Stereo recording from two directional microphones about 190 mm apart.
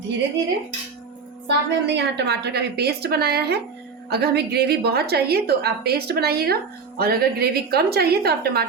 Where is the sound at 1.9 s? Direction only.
60° right (ahead or behind).